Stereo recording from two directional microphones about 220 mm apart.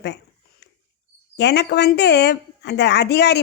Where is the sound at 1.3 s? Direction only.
50° left (ahead or behind).